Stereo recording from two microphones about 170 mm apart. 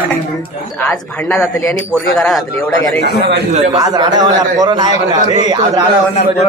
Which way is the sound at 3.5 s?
40° right (ahead or behind).